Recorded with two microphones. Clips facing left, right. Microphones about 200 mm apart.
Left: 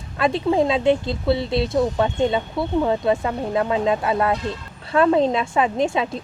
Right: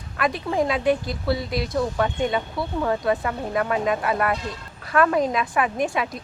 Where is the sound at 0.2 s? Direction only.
25° left (ahead or behind).